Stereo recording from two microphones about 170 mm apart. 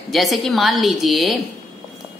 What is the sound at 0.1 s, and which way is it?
A woman's voice, centre (ahead or behind).